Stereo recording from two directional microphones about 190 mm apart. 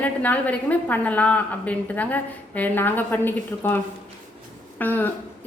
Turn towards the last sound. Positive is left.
turn(degrees=10)  # may be behind; listen again after turning